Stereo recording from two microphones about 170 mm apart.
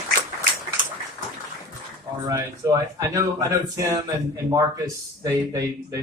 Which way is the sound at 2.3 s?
20° right (ahead or behind).